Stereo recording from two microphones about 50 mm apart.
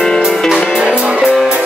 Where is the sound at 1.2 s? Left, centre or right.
Centre.